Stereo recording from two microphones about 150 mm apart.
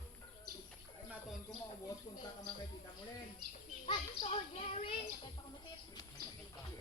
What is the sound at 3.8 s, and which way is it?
Children playing, 45° left (ahead or behind).